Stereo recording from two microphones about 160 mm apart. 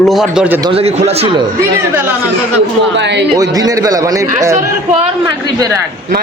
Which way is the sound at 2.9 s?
90° right.